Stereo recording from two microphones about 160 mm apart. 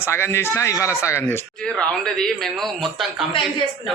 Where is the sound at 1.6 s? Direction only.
5° left (ahead or behind).